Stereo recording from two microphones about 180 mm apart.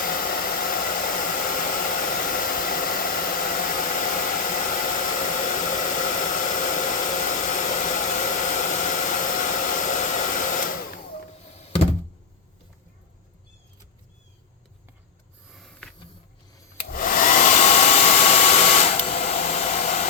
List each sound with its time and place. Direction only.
0.0 s hair dryer: 55° left (ahead or behind)
11.4 s thunk: 35° left (ahead or behind)
15.5 s a sound: centre (ahead or behind)
16.9 s hair dryer: 50° left (ahead or behind)